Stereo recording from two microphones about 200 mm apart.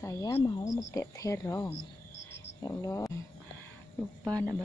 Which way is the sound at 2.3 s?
15° left (ahead or behind).